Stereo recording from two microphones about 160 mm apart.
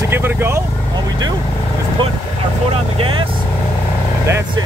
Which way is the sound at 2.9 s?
35° right (ahead or behind).